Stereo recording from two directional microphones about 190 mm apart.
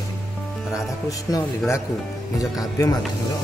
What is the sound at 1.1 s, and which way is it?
Speech, 20° left (ahead or behind).